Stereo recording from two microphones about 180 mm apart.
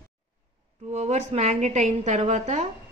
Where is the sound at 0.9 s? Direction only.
40° right (ahead or behind).